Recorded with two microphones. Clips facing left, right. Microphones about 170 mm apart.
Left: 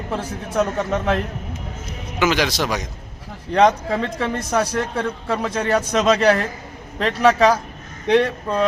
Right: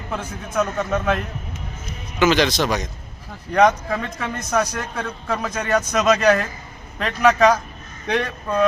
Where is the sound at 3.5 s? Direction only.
25° left (ahead or behind).